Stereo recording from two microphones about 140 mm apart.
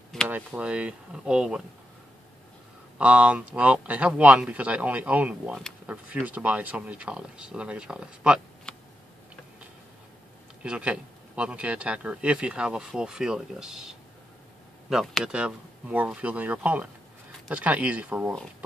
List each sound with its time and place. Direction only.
0.3 s a man's voice: 10° right (ahead or behind)
3.0 s a man's voice: 10° right (ahead or behind)
8.7 s tick: 5° left (ahead or behind)
10.6 s a man's voice: 5° right (ahead or behind)